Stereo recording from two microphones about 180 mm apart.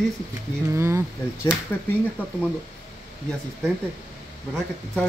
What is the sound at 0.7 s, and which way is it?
Speech, 15° right (ahead or behind).